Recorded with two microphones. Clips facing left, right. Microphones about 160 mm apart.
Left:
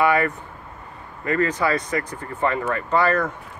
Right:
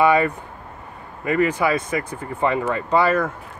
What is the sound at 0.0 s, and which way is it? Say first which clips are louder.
Speech: right 3 dB; 20° right (ahead or behind).